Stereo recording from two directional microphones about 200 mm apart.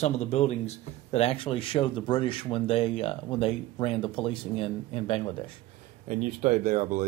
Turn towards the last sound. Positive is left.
turn(degrees=-40)  # may be behind; listen again after turning